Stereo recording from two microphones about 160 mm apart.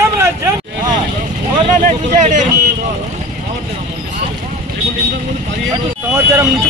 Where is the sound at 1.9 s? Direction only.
50° right (ahead or behind).